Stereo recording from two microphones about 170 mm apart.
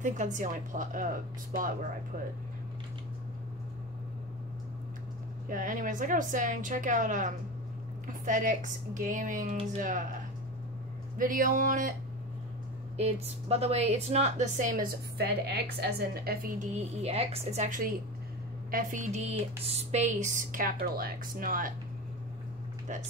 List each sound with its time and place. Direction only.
0.0 s a woman's voice: 45° right (ahead or behind)
5.5 s a woman's voice: 50° right (ahead or behind)
11.1 s a woman's voice: 55° right (ahead or behind)
12.9 s a woman's voice: 40° right (ahead or behind); by 21.7 s 55° right (ahead or behind)